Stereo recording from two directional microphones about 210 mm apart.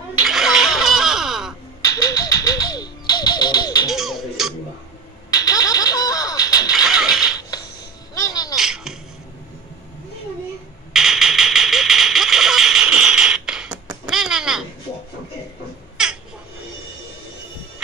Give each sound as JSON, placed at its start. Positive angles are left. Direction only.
{"t": 0.2, "sound": "music", "side_deg": 0}
{"t": 1.9, "sound": "a sound", "side_deg": 15}
{"t": 3.9, "sound": "music", "side_deg": 0}
{"t": 5.3, "sound": "music", "side_deg": 15}
{"t": 6.7, "sound": "mechanisms", "side_deg": -5}
{"t": 8.1, "sound": "a sound", "side_deg": 15}
{"t": 8.5, "sound": "music", "side_deg": 0}
{"t": 10.9, "sound": "a sound", "side_deg": 0}
{"t": 16.0, "sound": "babbling", "side_deg": -5}